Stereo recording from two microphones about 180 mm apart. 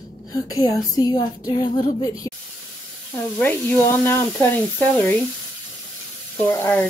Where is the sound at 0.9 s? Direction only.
20° left (ahead or behind).